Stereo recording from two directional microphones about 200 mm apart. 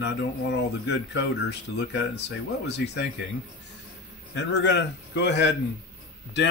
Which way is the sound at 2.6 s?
60° left (ahead or behind).